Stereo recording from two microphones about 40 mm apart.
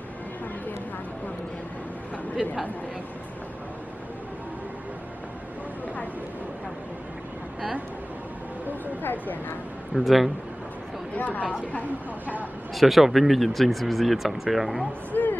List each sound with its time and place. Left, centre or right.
9.0 s a sound: left
9.9 s speech: centre
11.1 s speech: left
12.7 s speech: centre
15.1 s music: left